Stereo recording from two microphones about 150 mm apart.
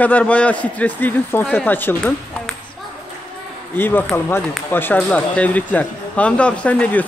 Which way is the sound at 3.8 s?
15° left (ahead or behind).